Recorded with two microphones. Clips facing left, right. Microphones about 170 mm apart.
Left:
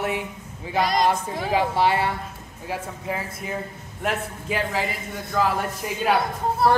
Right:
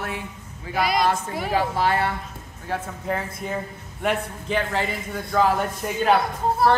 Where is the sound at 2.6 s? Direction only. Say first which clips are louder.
Right 2 dB; 5° left (ahead or behind).